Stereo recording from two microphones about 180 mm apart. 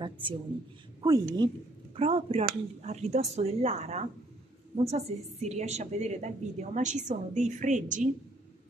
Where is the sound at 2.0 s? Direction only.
35° right (ahead or behind).